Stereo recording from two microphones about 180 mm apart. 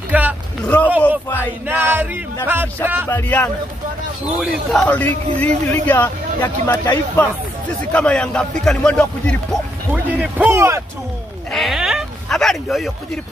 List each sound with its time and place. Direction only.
0.1 s speech: 10° right (ahead or behind)
1.7 s a man's voice: 10° right (ahead or behind)
3.1 s a man's voice: 10° left (ahead or behind)
9.9 s a man's voice: 10° right (ahead or behind)
11.5 s speech: centre (ahead or behind)